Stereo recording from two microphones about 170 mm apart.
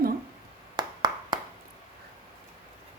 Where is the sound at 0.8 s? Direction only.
25° right (ahead or behind).